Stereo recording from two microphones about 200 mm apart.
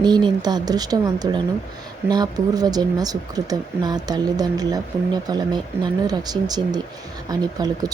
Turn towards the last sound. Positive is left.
turn(degrees=-20)  # may be behind; listen again after turning